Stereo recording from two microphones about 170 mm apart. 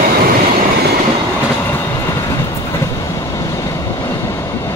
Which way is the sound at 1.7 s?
15° left (ahead or behind).